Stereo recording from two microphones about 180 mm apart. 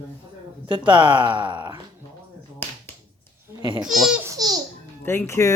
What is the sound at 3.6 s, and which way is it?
Speech, 25° right (ahead or behind).